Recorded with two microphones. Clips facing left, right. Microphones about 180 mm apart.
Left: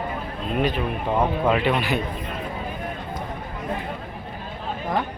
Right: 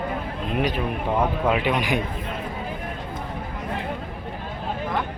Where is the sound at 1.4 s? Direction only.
10° right (ahead or behind).